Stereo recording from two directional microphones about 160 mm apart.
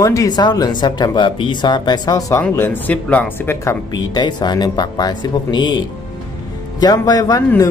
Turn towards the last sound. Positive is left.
turn(degrees=20)  # may be behind; listen again after turning